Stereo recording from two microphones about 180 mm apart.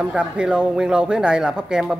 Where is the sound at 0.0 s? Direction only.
5° right (ahead or behind).